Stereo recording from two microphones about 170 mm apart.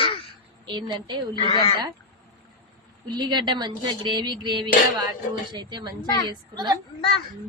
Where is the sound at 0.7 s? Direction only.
25° right (ahead or behind).